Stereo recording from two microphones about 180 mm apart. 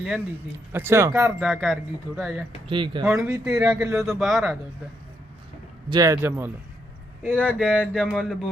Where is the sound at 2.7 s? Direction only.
25° right (ahead or behind).